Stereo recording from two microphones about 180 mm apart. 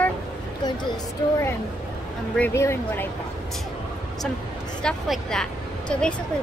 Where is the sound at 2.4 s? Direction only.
15° left (ahead or behind).